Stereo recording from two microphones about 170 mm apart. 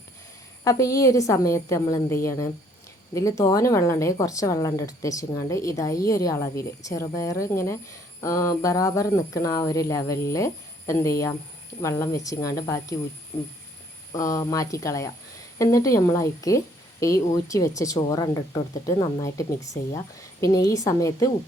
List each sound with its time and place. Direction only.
0.6 s a woman's voice: 20° left (ahead or behind)
13.3 s speech: 35° left (ahead or behind)
14.1 s a woman's voice: 20° left (ahead or behind)